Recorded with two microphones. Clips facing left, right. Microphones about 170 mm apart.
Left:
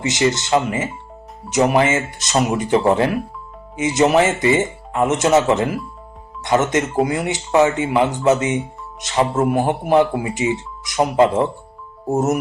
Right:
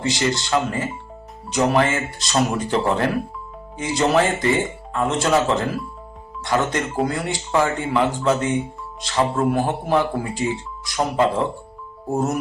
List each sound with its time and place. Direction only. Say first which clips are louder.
0.0 s speech: left 3 dB; 20° left (ahead or behind)